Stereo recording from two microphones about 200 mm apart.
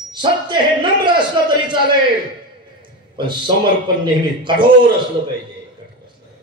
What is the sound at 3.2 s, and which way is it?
A man's voice, 25° right (ahead or behind).